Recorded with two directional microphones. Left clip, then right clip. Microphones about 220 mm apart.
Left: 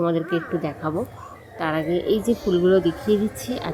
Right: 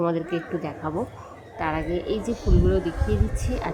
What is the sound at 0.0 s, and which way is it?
Speech, 5° left (ahead or behind).